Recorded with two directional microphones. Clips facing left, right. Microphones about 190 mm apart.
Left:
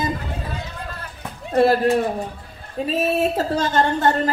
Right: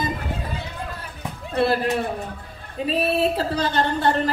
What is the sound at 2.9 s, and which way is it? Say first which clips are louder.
A woman's voice: left 1 dB; 45° left (ahead or behind).